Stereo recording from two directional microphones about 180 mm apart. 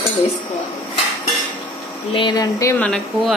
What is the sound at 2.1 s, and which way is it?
Speech, 25° left (ahead or behind).